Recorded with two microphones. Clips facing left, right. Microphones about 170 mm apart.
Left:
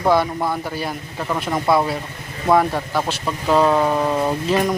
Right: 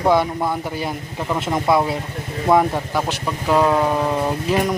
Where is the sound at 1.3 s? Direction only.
15° right (ahead or behind); by 4.3 s centre (ahead or behind).